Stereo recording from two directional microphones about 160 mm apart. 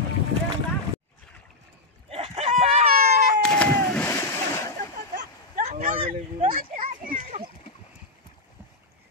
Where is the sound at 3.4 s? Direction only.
5° left (ahead or behind).